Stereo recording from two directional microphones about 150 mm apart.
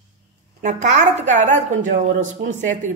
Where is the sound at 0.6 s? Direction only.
50° right (ahead or behind).